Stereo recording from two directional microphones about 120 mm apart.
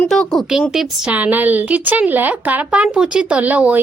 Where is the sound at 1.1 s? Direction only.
15° right (ahead or behind).